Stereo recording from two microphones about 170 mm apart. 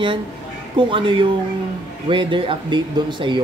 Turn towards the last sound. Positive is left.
turn(degrees=-30)  # may be behind; listen again after turning